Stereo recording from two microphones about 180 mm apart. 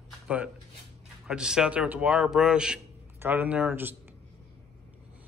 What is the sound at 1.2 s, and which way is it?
A man's voice, 5° right (ahead or behind).